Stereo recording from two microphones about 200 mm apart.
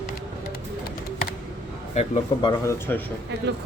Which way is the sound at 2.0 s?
25° left (ahead or behind).